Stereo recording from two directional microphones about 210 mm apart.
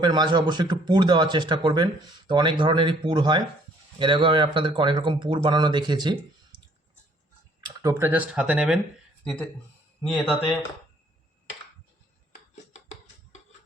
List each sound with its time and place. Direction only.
0.0 s speech: 20° right (ahead or behind)
7.6 s speech: 15° right (ahead or behind)
10.1 s speech: centre (ahead or behind)